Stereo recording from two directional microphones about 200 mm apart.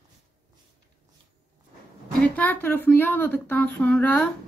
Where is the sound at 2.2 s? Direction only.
10° left (ahead or behind).